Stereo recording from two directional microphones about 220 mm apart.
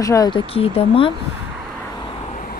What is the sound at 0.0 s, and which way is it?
A woman's voice, 15° left (ahead or behind).